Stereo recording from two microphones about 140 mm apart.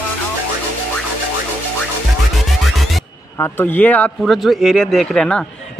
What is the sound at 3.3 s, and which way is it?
Speech, 15° left (ahead or behind).